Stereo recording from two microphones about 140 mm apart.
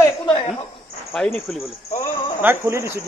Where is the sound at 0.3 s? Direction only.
35° left (ahead or behind).